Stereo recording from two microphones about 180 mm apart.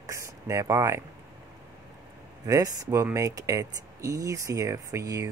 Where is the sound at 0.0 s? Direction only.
15° right (ahead or behind).